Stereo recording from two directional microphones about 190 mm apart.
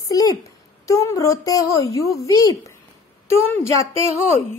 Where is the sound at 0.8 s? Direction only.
15° left (ahead or behind).